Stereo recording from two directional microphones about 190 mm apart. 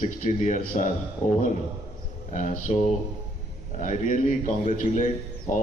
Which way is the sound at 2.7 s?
35° left (ahead or behind).